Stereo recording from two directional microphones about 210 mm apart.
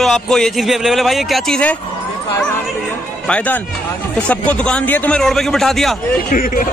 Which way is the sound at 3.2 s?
5° left (ahead or behind).